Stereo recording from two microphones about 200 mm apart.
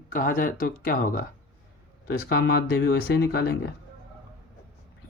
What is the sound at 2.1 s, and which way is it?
Speech, 55° left (ahead or behind).